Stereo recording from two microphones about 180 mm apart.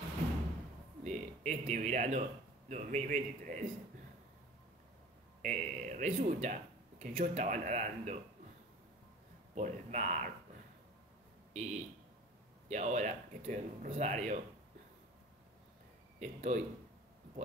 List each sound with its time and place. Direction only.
1.0 s speech: 40° right (ahead or behind)
5.4 s speech: 45° right (ahead or behind)
9.6 s speech: 40° right (ahead or behind)
11.5 s speech: 40° right (ahead or behind)
16.2 s speech: 40° right (ahead or behind)